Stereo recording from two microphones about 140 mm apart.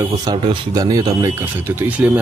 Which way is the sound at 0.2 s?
35° right (ahead or behind).